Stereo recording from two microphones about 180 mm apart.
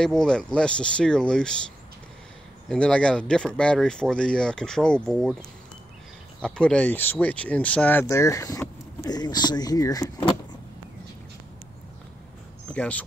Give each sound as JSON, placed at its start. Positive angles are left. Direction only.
{"t": 0.0, "sound": "speech", "side_deg": 5}
{"t": 2.7, "sound": "speech", "side_deg": 5}
{"t": 6.4, "sound": "speech", "side_deg": 5}
{"t": 12.7, "sound": "speech", "side_deg": 10}